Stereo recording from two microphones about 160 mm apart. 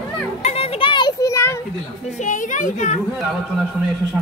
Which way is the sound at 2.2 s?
55° left (ahead or behind).